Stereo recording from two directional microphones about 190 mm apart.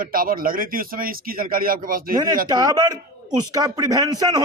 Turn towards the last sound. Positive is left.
turn(degrees=-20)  # may be behind; listen again after turning